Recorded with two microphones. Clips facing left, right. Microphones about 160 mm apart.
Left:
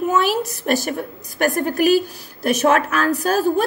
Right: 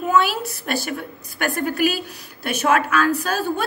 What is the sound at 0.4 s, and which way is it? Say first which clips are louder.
A woman's voice: left 5 dB; 40° left (ahead or behind).